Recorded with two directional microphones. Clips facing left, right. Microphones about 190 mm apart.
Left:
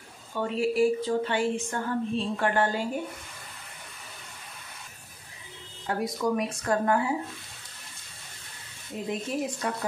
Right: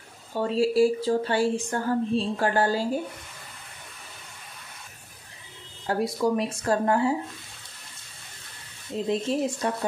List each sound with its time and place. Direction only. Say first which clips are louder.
0.3 s speech: right 4 dB; 35° right (ahead or behind)
5.9 s speech: right 3 dB; 30° right (ahead or behind)
8.9 s speech: right 5 dB; 30° right (ahead or behind)